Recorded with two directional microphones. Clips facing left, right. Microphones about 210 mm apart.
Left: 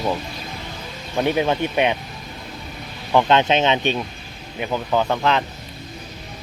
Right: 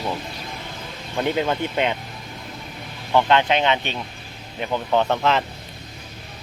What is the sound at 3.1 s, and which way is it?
Speech, 20° left (ahead or behind).